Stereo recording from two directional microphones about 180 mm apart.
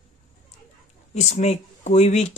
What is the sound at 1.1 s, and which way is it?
Speech, 40° left (ahead or behind).